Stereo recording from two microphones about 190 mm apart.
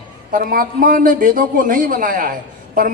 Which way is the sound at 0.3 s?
50° right (ahead or behind).